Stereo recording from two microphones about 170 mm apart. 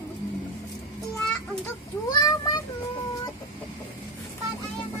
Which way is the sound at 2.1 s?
25° left (ahead or behind).